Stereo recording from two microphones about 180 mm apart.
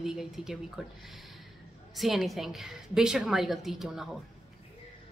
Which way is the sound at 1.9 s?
Centre (ahead or behind).